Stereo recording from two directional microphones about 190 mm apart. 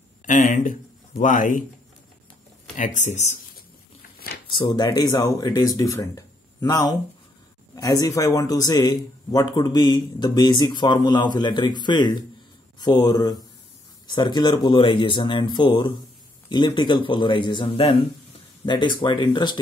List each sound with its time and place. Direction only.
0.3 s speech: 40° left (ahead or behind)
2.7 s speech: 40° left (ahead or behind)
4.5 s speech: 25° left (ahead or behind)